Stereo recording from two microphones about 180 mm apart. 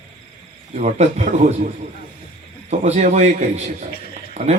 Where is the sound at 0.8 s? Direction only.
40° right (ahead or behind).